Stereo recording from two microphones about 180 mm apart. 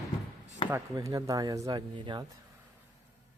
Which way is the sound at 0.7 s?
20° right (ahead or behind).